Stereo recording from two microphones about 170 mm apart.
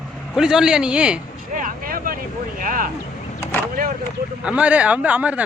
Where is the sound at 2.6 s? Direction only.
55° right (ahead or behind).